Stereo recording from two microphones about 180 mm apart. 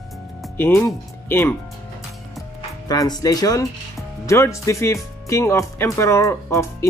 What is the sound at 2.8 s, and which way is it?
Speech, 20° left (ahead or behind).